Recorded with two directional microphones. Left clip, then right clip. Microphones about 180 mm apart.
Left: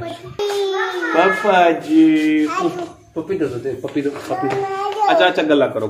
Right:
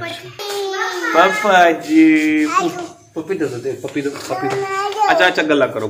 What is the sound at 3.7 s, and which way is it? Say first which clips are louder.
A child's voice: even; 5° right (ahead or behind).